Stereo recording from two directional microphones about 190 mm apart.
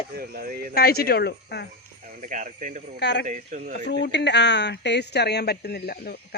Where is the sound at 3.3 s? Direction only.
45° right (ahead or behind).